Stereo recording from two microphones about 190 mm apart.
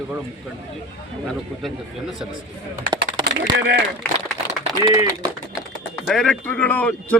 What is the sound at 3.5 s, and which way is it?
Speech, 60° right (ahead or behind).